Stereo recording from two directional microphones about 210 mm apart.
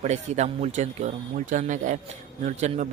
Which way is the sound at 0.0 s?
30° right (ahead or behind).